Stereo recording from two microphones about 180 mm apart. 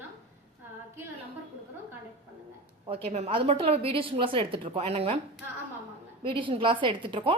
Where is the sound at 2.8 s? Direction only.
35° right (ahead or behind).